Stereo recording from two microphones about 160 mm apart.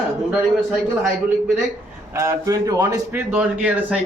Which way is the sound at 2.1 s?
20° right (ahead or behind).